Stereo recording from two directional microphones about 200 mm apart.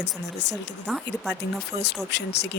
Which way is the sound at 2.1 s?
55° left (ahead or behind).